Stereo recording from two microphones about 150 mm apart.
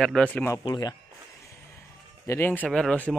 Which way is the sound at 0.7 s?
25° left (ahead or behind).